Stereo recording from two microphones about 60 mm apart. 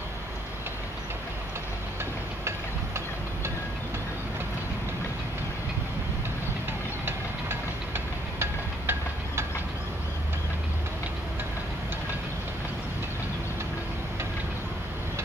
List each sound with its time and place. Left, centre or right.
7.1 s engine: right